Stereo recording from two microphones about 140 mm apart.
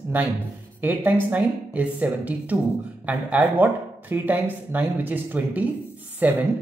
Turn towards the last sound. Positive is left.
turn(degrees=-10)  # may be behind; listen again after turning